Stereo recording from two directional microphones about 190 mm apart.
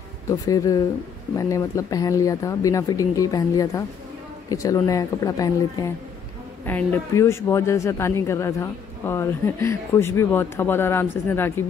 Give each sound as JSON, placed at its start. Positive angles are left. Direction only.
{"t": 0.3, "sound": "a man's voice", "side_deg": 20}